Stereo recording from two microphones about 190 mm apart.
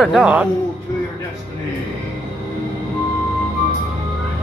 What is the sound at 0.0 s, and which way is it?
Speech, 5° right (ahead or behind).